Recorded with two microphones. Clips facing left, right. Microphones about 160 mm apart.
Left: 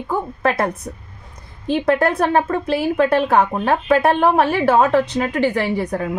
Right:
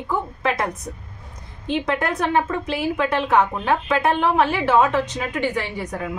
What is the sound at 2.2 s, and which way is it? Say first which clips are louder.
A woman's voice: left 4 dB; 45° left (ahead or behind).